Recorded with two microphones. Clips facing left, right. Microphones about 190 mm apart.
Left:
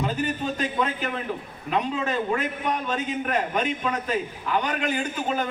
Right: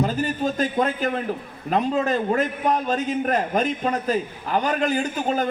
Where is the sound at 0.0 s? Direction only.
40° right (ahead or behind).